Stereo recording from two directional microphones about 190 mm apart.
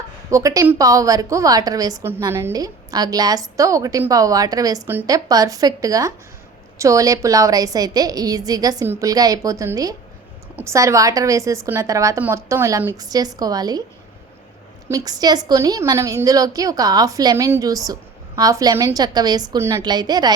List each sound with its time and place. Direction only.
0.3 s a woman's voice: 15° right (ahead or behind)
14.8 s a woman's voice: 20° right (ahead or behind)